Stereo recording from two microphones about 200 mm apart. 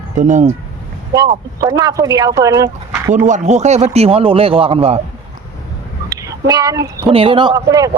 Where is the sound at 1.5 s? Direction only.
20° right (ahead or behind).